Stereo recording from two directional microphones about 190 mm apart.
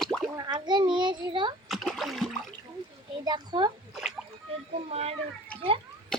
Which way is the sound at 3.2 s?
20° right (ahead or behind).